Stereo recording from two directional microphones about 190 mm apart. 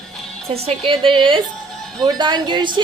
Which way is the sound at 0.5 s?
30° right (ahead or behind).